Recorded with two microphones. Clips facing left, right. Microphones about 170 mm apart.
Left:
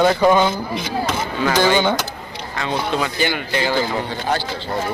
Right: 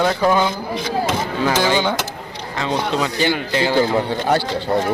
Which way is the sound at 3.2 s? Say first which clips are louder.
Right 2 dB; 30° right (ahead or behind).